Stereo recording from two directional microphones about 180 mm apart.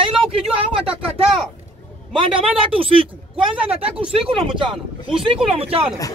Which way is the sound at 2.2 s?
30° right (ahead or behind).